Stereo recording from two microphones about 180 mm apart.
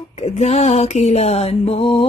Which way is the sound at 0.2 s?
35° left (ahead or behind).